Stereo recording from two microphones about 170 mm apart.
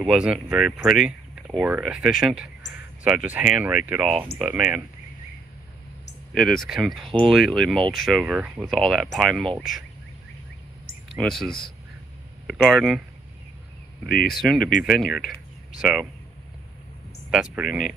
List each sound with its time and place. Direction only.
0.0 s speech: 5° right (ahead or behind)
6.3 s speech: centre (ahead or behind)
11.1 s speech: 5° left (ahead or behind)
14.0 s speech: 60° left (ahead or behind)
14.3 s speech: centre (ahead or behind)
17.3 s speech: 5° right (ahead or behind)